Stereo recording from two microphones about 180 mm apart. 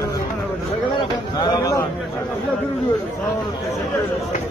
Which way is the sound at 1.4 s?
20° left (ahead or behind).